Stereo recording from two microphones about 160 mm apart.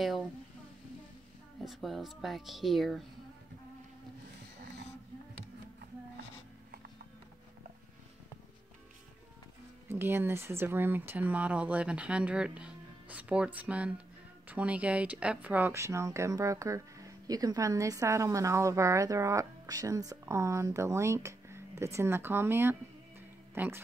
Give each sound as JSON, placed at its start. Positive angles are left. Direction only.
{"t": 1.6, "sound": "speech", "side_deg": 0}
{"t": 9.8, "sound": "speech", "side_deg": -15}